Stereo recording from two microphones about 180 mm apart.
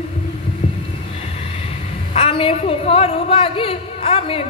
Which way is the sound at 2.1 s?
30° left (ahead or behind).